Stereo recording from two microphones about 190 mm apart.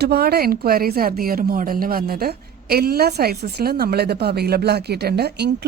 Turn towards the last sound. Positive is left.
turn(degrees=-60)  # may be behind; listen again after turning